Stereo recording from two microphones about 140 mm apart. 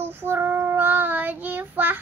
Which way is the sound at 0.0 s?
15° right (ahead or behind).